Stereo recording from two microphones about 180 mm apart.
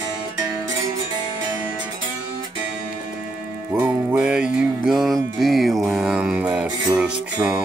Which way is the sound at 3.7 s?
10° right (ahead or behind).